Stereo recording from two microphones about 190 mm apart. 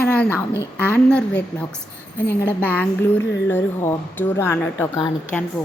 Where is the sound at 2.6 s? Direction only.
10° left (ahead or behind).